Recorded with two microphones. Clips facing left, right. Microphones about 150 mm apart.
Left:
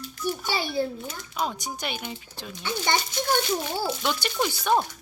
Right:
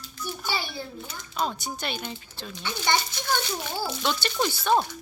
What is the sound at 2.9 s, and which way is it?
Speech, 50° left (ahead or behind).